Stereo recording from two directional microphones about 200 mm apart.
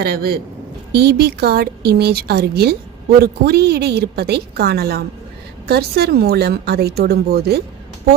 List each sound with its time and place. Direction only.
0.0 s speech: 50° right (ahead or behind)